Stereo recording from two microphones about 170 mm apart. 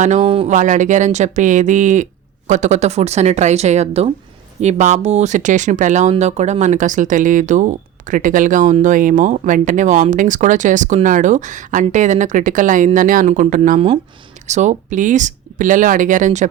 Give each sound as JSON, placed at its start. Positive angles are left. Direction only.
{"t": 0.0, "sound": "speech", "side_deg": -45}
{"t": 0.3, "sound": "speech", "side_deg": -35}
{"t": 0.5, "sound": "speech", "side_deg": -45}